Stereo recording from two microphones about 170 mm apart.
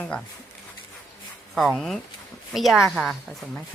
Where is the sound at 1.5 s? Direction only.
Centre (ahead or behind).